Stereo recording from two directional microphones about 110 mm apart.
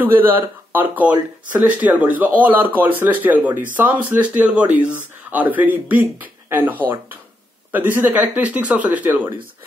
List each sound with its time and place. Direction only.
0.0 s speech: 20° right (ahead or behind)